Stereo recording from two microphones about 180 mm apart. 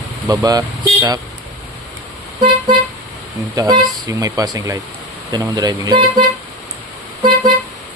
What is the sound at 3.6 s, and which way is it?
Speech, 20° right (ahead or behind).